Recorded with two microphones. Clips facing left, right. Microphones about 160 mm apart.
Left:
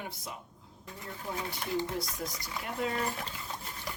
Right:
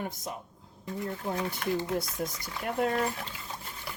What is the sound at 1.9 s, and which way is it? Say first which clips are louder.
Speech: right 4 dB; 55° right (ahead or behind).